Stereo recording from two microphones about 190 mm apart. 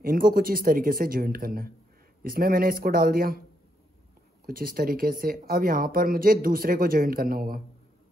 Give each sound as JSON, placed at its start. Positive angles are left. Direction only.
{"t": 0.0, "sound": "speech", "side_deg": -50}
{"t": 4.5, "sound": "speech", "side_deg": -50}